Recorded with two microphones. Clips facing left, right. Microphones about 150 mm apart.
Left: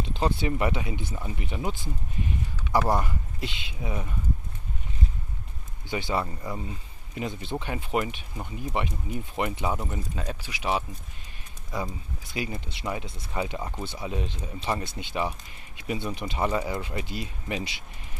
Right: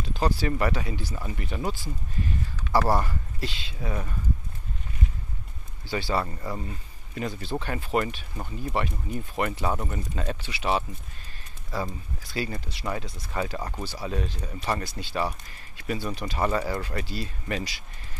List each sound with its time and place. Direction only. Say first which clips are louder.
0.0 s speech: even; 25° left (ahead or behind)
1.1 s speech: right 1 dB; 10° left (ahead or behind)
5.9 s speech: right 1 dB; 20° left (ahead or behind)
13.6 s speech: even; 5° left (ahead or behind)
13.8 s speech: right 1 dB; 20° left (ahead or behind)